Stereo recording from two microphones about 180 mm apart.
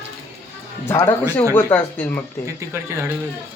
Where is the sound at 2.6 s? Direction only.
15° right (ahead or behind).